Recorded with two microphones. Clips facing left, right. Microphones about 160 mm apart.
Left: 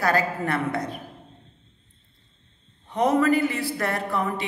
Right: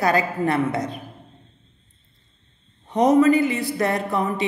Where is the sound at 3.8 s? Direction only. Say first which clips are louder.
Right 4 dB; 20° right (ahead or behind).